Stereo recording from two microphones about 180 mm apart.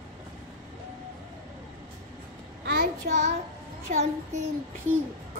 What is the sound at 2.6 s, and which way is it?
Child singing, 60° right (ahead or behind).